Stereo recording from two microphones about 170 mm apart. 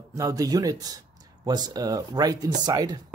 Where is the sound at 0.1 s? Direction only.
20° right (ahead or behind).